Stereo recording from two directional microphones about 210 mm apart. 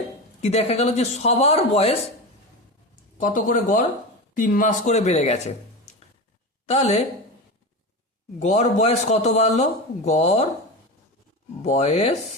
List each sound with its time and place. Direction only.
0.4 s speech: 30° left (ahead or behind)
3.2 s a man's voice: 40° left (ahead or behind)
6.7 s a man's voice: 30° left (ahead or behind)
8.4 s a man's voice: 35° left (ahead or behind)
11.6 s a man's voice: 30° left (ahead or behind)